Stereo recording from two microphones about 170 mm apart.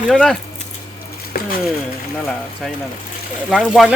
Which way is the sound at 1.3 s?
60° left (ahead or behind).